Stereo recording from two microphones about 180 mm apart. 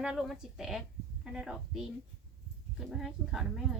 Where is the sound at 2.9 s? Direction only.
Centre (ahead or behind).